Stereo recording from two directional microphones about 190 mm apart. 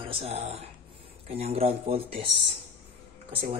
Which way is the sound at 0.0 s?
30° right (ahead or behind).